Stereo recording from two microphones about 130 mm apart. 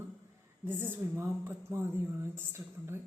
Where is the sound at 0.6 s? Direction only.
15° right (ahead or behind).